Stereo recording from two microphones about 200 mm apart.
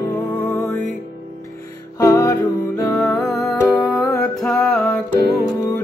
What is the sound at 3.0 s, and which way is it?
Music, centre (ahead or behind).